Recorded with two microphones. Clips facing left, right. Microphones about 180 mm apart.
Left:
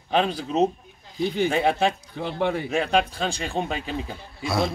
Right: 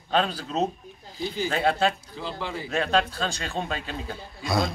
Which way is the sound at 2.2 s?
60° left (ahead or behind).